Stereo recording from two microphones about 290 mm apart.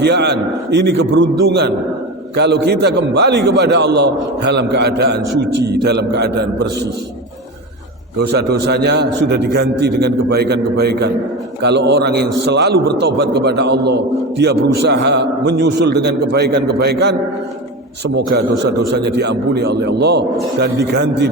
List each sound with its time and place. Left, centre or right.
0.0 s a man's voice: right
8.3 s a man's voice: right